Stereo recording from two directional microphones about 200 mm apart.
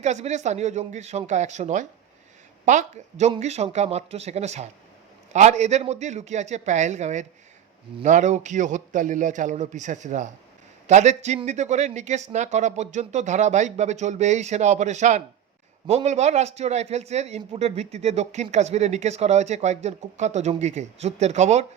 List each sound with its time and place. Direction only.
0.0 s speech: 35° right (ahead or behind)